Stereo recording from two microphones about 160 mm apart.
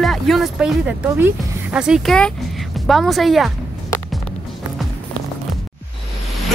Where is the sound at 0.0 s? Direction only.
Centre (ahead or behind).